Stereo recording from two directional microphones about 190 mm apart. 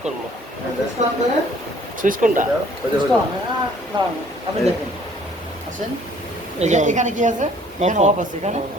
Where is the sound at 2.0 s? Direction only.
45° right (ahead or behind).